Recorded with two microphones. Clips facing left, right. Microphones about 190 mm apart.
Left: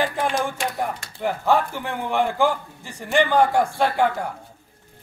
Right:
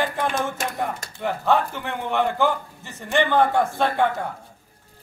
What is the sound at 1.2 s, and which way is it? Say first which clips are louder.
A man's voice: left 1 dB; 10° left (ahead or behind).